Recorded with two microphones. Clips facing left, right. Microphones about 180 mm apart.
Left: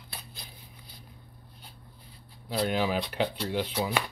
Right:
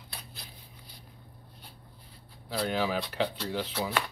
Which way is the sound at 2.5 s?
15° left (ahead or behind).